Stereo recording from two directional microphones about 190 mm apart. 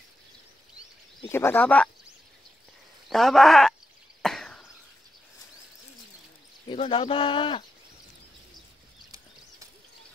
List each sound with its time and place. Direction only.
1.3 s speech: 10° left (ahead or behind)
3.1 s speech: centre (ahead or behind)
4.2 s cough: 5° left (ahead or behind)
6.7 s speech: 25° left (ahead or behind)